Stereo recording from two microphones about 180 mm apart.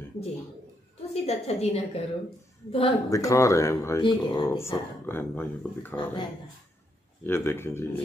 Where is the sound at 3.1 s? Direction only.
15° left (ahead or behind).